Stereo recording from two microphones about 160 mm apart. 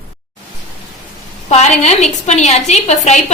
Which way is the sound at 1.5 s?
45° left (ahead or behind).